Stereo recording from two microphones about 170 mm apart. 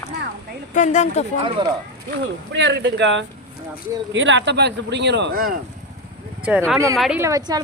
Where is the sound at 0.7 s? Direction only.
45° left (ahead or behind).